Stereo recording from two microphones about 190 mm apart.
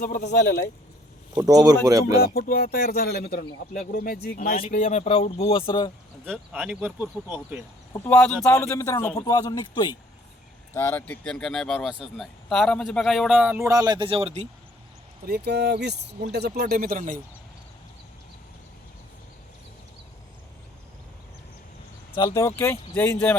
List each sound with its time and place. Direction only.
0.0 s speech: 45° left (ahead or behind)
1.4 s speech: 20° right (ahead or behind)
2.1 s speech: 55° left (ahead or behind); by 5.9 s 25° left (ahead or behind)
6.2 s speech: 10° right (ahead or behind)
7.9 s a man's voice: 10° left (ahead or behind); by 14.4 s 30° right (ahead or behind)
15.3 s speech: 60° right (ahead or behind)
22.3 s a man's voice: 15° left (ahead or behind)